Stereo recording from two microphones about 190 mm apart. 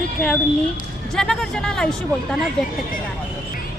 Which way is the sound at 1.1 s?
5° left (ahead or behind).